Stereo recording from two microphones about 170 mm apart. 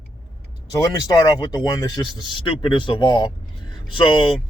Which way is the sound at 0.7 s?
20° left (ahead or behind).